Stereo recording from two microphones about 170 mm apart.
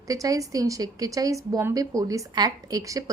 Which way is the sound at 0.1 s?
20° right (ahead or behind).